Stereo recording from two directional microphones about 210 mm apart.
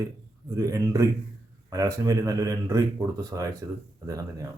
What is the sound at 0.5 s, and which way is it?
Speech, 15° right (ahead or behind).